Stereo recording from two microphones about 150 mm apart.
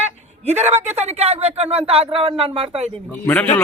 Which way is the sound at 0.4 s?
45° right (ahead or behind).